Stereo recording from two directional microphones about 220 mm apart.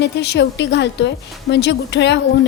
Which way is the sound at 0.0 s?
50° left (ahead or behind).